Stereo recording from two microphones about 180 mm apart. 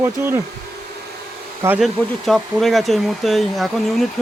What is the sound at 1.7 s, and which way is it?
Speech, centre (ahead or behind).